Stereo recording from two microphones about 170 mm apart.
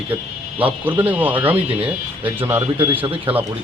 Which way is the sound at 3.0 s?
30° right (ahead or behind).